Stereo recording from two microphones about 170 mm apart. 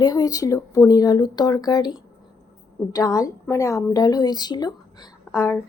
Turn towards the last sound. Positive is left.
turn(degrees=15)  # may be behind; listen again after turning